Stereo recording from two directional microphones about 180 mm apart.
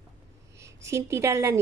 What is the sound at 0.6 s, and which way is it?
A woman's voice, 15° right (ahead or behind).